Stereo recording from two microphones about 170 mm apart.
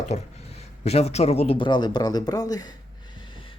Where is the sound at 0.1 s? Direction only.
40° left (ahead or behind).